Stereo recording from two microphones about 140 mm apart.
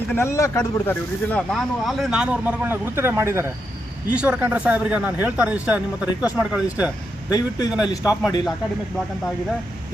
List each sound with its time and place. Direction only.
0.1 s speech: 20° left (ahead or behind); by 6.9 s 10° right (ahead or behind)
7.3 s speech: 30° left (ahead or behind)
8.1 s speech: 5° right (ahead or behind)